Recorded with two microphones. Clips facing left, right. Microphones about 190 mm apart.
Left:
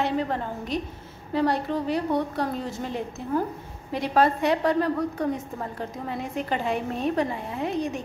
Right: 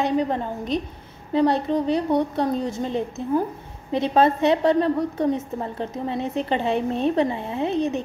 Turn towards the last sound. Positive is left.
turn(degrees=-25)  # may be behind; listen again after turning